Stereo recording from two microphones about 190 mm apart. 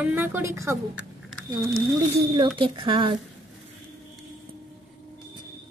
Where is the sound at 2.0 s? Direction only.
25° right (ahead or behind).